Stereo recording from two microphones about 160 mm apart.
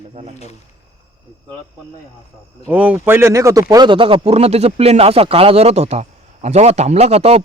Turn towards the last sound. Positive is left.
turn(degrees=-40)  # may be behind; listen again after turning